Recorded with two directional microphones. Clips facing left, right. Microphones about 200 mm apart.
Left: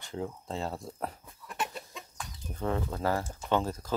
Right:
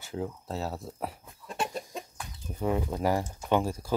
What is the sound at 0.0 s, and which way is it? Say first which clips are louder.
Speech: right 2 dB; 5° right (ahead or behind).